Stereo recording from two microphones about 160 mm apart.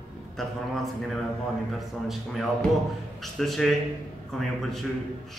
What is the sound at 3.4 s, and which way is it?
Speech, centre (ahead or behind).